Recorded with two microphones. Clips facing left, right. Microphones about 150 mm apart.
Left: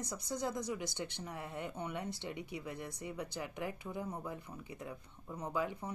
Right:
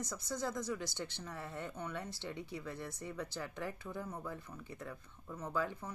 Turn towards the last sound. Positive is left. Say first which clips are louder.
# left 1 dB
turn(degrees=15)  # may be behind; listen again after turning